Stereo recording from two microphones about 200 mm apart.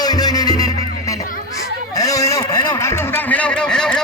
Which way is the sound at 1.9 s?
15° left (ahead or behind).